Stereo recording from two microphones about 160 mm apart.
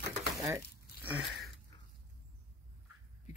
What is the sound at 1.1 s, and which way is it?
Speech, 5° right (ahead or behind).